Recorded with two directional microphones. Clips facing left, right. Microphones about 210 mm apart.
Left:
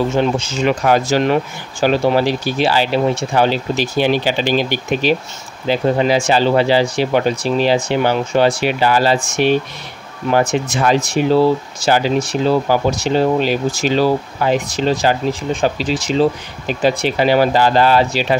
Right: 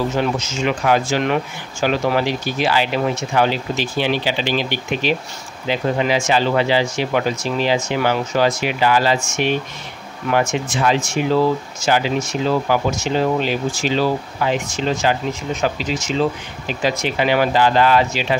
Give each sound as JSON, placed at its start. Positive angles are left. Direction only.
{"t": 0.1, "sound": "speech", "side_deg": 30}